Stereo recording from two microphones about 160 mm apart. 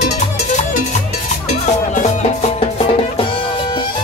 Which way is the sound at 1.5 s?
45° left (ahead or behind).